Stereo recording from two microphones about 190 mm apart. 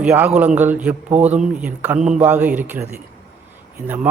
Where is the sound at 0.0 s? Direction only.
10° right (ahead or behind).